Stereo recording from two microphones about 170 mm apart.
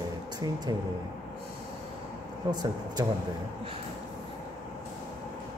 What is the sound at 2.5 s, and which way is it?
Speech, 25° right (ahead or behind).